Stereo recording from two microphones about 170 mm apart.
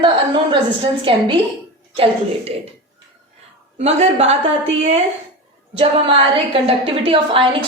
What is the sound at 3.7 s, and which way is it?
Speech, 40° right (ahead or behind).